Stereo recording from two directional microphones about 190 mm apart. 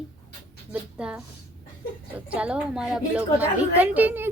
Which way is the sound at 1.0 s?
5° right (ahead or behind).